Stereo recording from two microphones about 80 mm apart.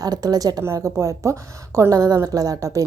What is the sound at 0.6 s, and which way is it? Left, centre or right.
A woman's voice, right.